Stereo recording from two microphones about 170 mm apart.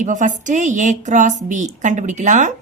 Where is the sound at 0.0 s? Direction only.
50° right (ahead or behind).